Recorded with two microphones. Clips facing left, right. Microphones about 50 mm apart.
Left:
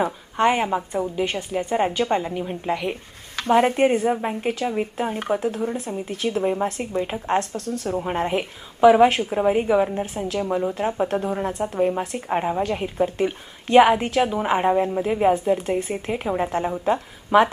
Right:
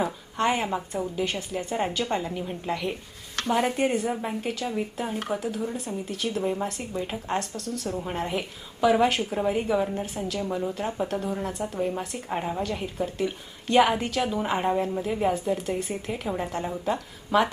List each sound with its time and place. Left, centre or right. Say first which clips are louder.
0.0 s a woman's voice: left 5 dB; left
3.4 s a woman's voice: left 7 dB; left